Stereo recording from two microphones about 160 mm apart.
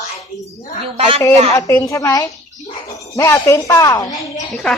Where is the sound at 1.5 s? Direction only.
20° left (ahead or behind).